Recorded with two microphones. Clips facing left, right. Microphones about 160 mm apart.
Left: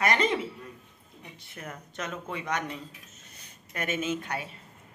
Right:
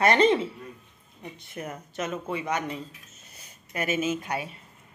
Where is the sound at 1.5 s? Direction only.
20° right (ahead or behind).